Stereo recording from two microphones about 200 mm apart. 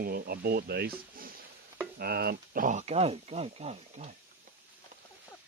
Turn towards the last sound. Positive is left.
turn(degrees=-30)  # may be behind; listen again after turning